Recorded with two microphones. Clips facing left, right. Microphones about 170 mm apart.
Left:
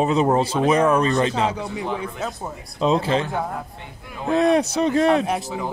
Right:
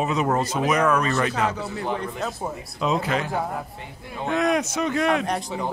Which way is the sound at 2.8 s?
30° left (ahead or behind).